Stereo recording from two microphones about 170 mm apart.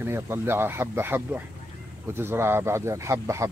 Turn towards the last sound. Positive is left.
turn(degrees=-15)  # may be behind; listen again after turning